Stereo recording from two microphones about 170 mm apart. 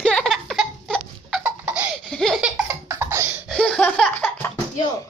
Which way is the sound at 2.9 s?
15° right (ahead or behind).